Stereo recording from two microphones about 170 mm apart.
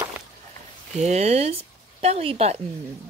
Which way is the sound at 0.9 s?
40° right (ahead or behind).